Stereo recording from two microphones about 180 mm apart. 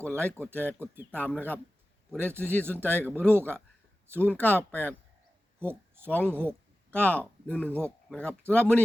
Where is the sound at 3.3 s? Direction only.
10° right (ahead or behind).